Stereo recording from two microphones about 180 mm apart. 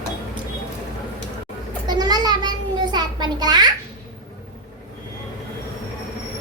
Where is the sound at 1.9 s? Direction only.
20° right (ahead or behind).